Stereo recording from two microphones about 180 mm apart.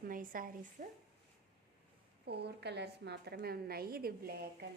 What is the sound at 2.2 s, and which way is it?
A woman's voice, 70° right (ahead or behind).